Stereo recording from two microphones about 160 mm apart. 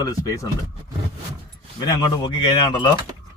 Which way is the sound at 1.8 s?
25° left (ahead or behind).